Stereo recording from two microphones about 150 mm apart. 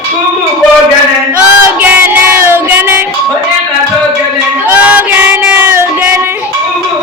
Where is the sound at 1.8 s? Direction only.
10° right (ahead or behind).